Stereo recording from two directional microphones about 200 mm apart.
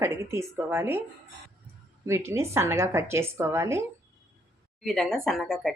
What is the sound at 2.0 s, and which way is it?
A woman's voice, 15° right (ahead or behind).